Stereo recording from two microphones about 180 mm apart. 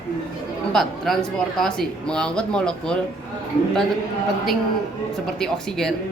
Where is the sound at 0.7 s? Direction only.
Centre (ahead or behind).